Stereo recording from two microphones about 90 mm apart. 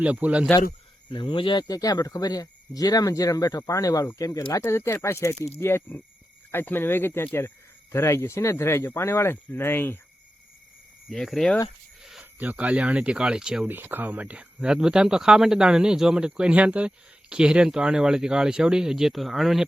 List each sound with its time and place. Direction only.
0.0 s speech: 15° right (ahead or behind)
1.0 s speech: 65° left (ahead or behind)
1.6 s speech: 45° left (ahead or behind); by 10.0 s 25° left (ahead or behind)
11.1 s speech: 5° left (ahead or behind)
12.2 s speech: 20° right (ahead or behind)
13.7 s speech: 20° right (ahead or behind); by 19.6 s centre (ahead or behind)